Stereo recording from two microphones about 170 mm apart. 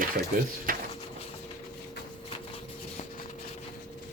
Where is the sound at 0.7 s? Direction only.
55° right (ahead or behind).